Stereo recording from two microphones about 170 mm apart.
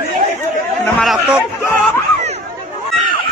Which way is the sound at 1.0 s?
Centre (ahead or behind).